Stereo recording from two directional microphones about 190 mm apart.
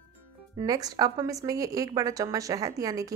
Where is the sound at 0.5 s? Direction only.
20° right (ahead or behind).